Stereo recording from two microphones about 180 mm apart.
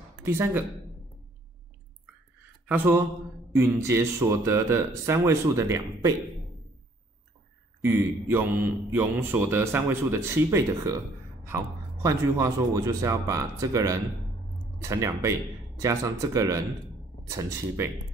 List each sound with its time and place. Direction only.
0.2 s speech: 15° right (ahead or behind)
2.7 s speech: 10° right (ahead or behind)
7.8 s speech: 10° right (ahead or behind)